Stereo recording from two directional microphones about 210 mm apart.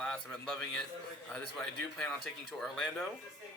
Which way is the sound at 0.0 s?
5° left (ahead or behind).